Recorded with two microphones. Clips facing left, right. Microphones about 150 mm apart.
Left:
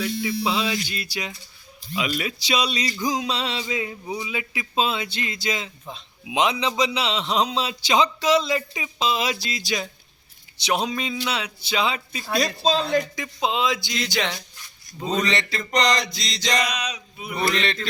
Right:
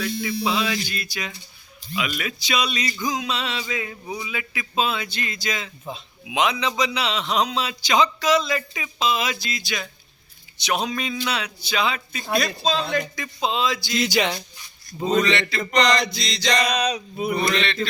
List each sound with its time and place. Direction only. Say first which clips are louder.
0.0 s a man's voice: even; 25° left (ahead or behind)
4.0 s speech: left 1 dB; 10° left (ahead or behind)
4.3 s a man's voice: left 1 dB; 25° left (ahead or behind)
13.9 s speech: right 4 dB; 5° right (ahead or behind)
15.1 s speech: right 3 dB; 35° left (ahead or behind)
16.6 s a sound: right 7 dB; 35° right (ahead or behind)